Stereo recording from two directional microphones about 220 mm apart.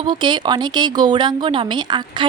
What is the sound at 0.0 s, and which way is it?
Speech, 20° right (ahead or behind).